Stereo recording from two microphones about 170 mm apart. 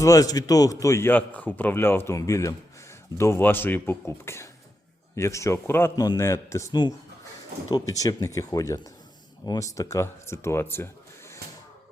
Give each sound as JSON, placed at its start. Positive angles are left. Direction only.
{"t": 0.0, "sound": "a man's voice", "side_deg": 20}